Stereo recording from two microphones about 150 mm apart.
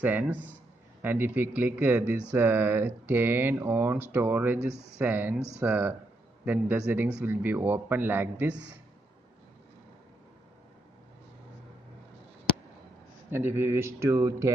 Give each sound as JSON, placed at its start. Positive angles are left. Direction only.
{"t": 0.0, "sound": "speech", "side_deg": -10}
{"t": 13.3, "sound": "speech", "side_deg": -15}